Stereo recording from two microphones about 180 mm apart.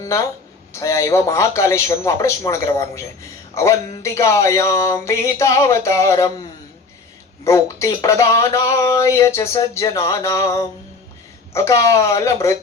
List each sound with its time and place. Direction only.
0.0 s speech: 15° left (ahead or behind)
7.4 s speech: 15° left (ahead or behind)